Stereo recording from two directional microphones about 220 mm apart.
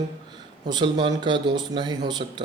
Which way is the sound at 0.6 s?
20° right (ahead or behind).